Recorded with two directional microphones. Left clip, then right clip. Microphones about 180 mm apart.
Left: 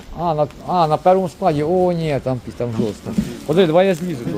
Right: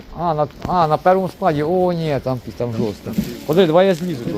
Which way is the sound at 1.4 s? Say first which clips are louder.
Even; 15° left (ahead or behind).